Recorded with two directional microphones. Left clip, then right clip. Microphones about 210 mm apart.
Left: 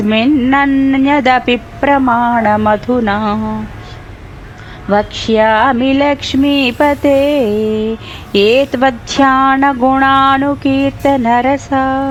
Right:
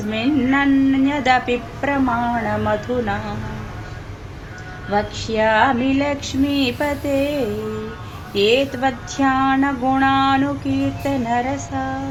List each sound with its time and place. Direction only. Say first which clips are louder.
0.1 s speech: left 7 dB; 50° left (ahead or behind)
4.9 s speech: left 9 dB; 45° left (ahead or behind)